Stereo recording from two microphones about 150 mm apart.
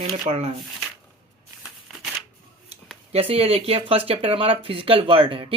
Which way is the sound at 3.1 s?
40° right (ahead or behind).